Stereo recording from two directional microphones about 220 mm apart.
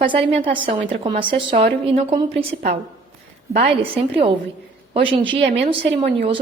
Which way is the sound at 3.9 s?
25° right (ahead or behind).